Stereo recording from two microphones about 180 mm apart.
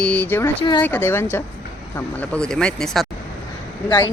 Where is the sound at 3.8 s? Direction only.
20° left (ahead or behind).